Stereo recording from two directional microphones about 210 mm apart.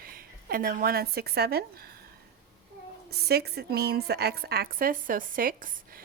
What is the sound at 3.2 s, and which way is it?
A woman's voice, 50° right (ahead or behind).